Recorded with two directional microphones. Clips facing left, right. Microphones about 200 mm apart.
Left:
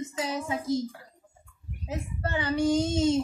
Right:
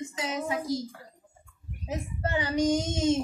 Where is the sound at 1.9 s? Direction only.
15° right (ahead or behind).